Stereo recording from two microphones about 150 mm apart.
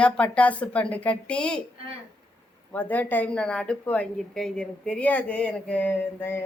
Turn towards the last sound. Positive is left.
turn(degrees=15)  # may be behind; listen again after turning